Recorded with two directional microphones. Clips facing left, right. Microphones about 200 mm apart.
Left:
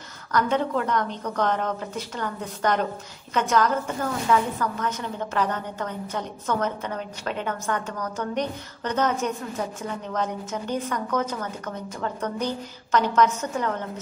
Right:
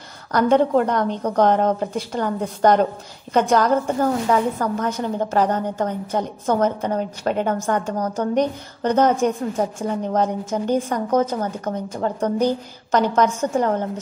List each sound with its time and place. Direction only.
0.8 s a woman's voice: 35° right (ahead or behind)